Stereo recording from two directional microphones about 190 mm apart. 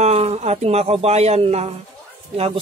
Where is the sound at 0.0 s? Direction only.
35° right (ahead or behind).